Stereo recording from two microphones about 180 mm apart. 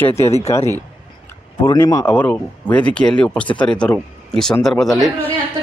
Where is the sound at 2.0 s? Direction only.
5° left (ahead or behind).